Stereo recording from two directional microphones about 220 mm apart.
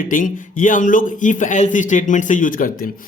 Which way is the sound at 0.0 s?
40° left (ahead or behind).